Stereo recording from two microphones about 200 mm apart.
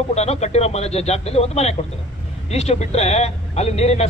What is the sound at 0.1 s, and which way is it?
Speech, 35° left (ahead or behind).